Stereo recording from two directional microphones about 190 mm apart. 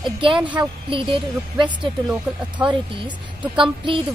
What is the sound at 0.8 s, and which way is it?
A woman's voice, 25° right (ahead or behind).